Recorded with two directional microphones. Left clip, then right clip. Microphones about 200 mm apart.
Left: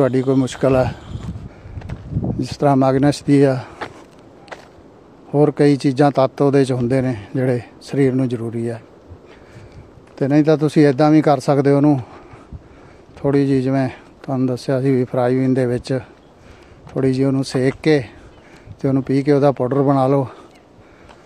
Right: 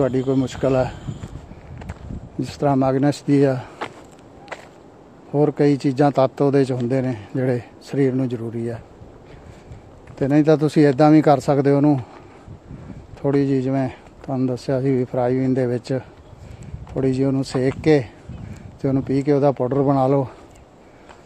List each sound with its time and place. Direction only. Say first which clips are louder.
0.0 s speech: left 4 dB; 20° left (ahead or behind)
2.4 s speech: left 4 dB; 15° left (ahead or behind)
5.3 s speech: left 3 dB; 20° left (ahead or behind)
10.1 s speech: left 1 dB; 10° left (ahead or behind)
13.2 s speech: left 3 dB; 15° left (ahead or behind)